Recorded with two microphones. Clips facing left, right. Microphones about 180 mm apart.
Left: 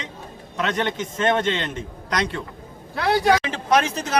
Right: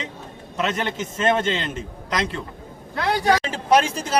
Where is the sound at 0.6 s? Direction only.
5° right (ahead or behind).